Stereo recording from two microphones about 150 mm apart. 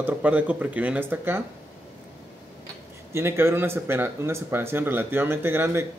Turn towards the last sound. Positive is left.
turn(degrees=-15)  # may be behind; listen again after turning